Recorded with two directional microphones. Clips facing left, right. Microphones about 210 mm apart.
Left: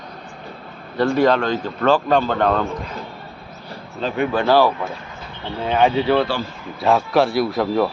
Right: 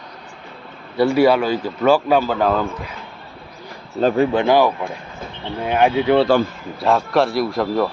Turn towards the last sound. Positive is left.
turn(degrees=0)  # may be behind; listen again after turning